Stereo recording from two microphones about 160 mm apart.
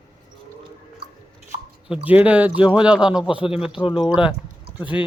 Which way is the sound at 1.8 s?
5° right (ahead or behind).